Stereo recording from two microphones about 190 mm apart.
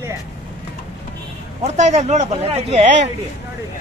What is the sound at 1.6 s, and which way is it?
Speech, 35° right (ahead or behind).